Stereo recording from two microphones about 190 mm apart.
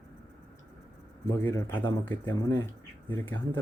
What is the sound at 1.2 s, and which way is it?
Speech, 15° left (ahead or behind).